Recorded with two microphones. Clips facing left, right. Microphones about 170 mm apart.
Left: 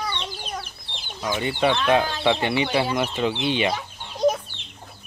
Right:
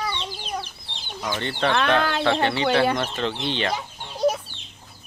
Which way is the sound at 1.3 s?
10° left (ahead or behind).